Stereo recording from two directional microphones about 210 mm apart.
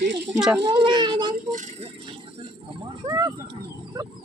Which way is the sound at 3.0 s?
30° right (ahead or behind).